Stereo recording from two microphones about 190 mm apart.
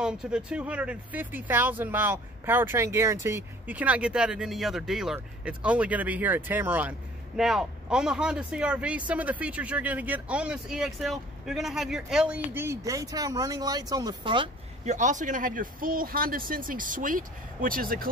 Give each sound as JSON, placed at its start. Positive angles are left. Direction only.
{"t": 0.0, "sound": "speech", "side_deg": -5}
{"t": 14.9, "sound": "speech", "side_deg": -40}